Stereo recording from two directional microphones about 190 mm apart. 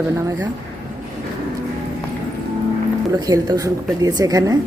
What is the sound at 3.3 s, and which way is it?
A woman's voice, 20° right (ahead or behind).